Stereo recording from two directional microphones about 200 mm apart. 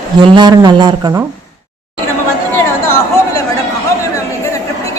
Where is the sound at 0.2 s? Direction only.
20° right (ahead or behind).